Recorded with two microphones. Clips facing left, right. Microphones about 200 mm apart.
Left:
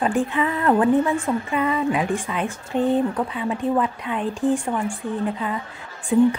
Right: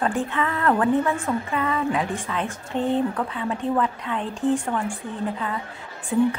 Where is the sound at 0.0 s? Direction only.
15° left (ahead or behind).